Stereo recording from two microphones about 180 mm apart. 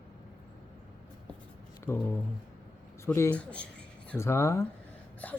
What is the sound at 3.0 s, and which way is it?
Speech, 15° left (ahead or behind).